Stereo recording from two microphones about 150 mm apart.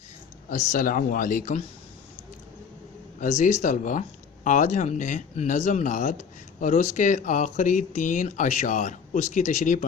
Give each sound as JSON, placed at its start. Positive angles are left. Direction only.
{"t": 0.5, "sound": "speech", "side_deg": 55}
{"t": 3.2, "sound": "speech", "side_deg": 55}